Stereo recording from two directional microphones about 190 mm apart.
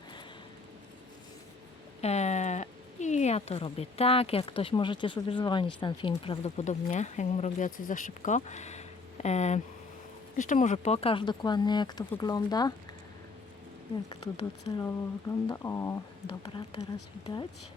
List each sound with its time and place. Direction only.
2.0 s speech: 35° left (ahead or behind); by 12.7 s 20° left (ahead or behind)
14.1 s speech: 20° left (ahead or behind)
16.2 s speech: 25° left (ahead or behind)